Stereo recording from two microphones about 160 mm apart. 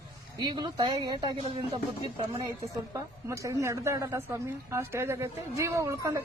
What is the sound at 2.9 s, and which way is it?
A woman's voice, 20° right (ahead or behind).